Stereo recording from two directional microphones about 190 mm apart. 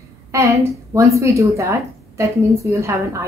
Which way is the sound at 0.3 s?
15° right (ahead or behind).